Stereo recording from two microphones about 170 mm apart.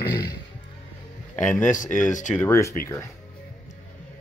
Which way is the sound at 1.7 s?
50° left (ahead or behind).